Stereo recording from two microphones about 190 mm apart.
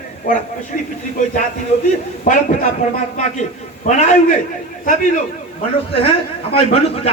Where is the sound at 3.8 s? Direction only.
40° left (ahead or behind).